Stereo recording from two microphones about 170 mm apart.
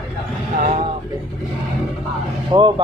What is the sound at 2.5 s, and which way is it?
Speech, 25° right (ahead or behind).